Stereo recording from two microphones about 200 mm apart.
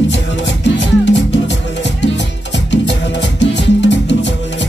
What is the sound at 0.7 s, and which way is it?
Music, 60° left (ahead or behind).